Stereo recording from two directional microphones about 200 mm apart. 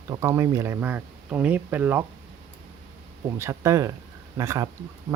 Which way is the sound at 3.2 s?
15° right (ahead or behind).